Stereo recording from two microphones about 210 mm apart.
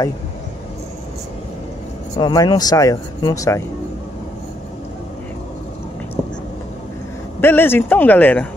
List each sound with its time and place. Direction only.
2.1 s speech: 20° left (ahead or behind)
7.3 s speech: 10° left (ahead or behind)